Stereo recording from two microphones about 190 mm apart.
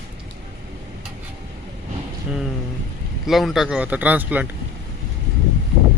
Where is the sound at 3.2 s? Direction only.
Centre (ahead or behind).